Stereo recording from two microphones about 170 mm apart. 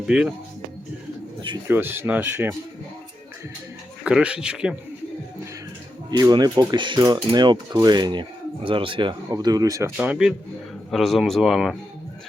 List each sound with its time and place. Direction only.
0.0 s speech: 5° right (ahead or behind)
1.6 s speech: 10° right (ahead or behind)
4.0 s speech: 5° right (ahead or behind)
6.1 s speech: 25° right (ahead or behind)
10.0 s speech: 5° right (ahead or behind)